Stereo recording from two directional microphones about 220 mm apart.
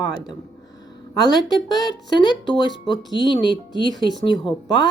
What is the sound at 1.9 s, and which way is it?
Speech, 20° left (ahead or behind).